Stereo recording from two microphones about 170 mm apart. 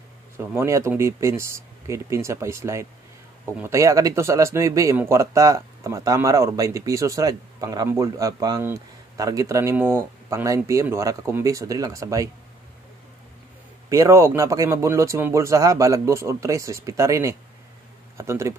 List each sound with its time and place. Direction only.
0.4 s speech: 15° right (ahead or behind)
13.8 s speech: 20° right (ahead or behind)